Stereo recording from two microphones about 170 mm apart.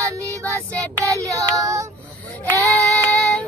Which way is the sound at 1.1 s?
20° right (ahead or behind).